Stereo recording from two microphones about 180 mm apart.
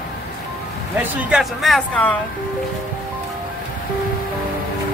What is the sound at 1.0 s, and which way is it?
Speech, 5° right (ahead or behind).